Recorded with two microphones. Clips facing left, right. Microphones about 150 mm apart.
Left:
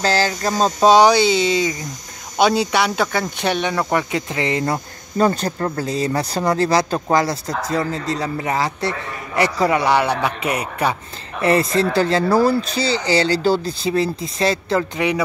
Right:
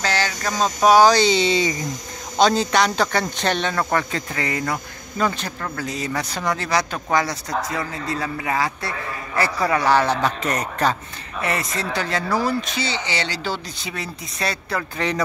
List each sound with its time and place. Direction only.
0.0 s speech: 35° left (ahead or behind)
1.1 s speech: 5° left (ahead or behind); by 8.9 s 30° left (ahead or behind)
9.3 s a man's voice: 20° left (ahead or behind)
11.4 s speech: 30° left (ahead or behind)
15.0 s a man's voice: 10° left (ahead or behind)